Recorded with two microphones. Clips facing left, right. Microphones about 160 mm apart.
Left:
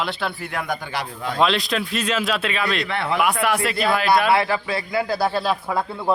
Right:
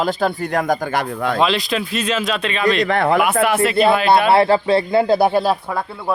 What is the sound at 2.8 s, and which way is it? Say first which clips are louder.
Speech: right 7 dB; 45° right (ahead or behind).